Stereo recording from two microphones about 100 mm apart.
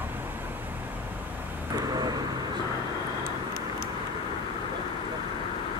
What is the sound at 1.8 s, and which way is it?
Vehicle, 40° right (ahead or behind).